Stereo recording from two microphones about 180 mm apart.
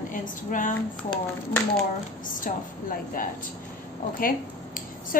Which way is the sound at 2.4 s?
50° left (ahead or behind).